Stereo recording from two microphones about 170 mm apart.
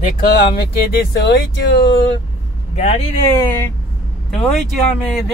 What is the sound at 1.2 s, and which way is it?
Speech, 90° left.